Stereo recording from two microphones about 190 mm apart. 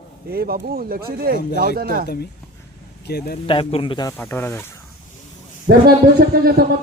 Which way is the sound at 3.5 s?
30° left (ahead or behind).